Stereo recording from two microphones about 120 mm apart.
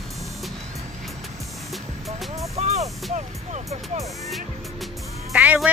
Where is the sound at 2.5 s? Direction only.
65° right (ahead or behind).